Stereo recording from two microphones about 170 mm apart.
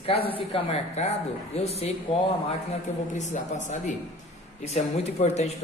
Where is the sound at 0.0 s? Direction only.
35° left (ahead or behind).